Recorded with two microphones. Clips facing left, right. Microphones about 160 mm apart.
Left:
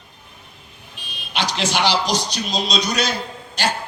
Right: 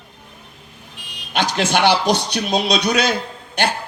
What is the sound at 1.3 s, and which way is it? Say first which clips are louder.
A man's voice: right 4 dB; 50° right (ahead or behind).